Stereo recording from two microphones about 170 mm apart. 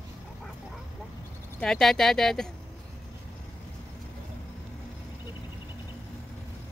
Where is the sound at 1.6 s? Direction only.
5° left (ahead or behind).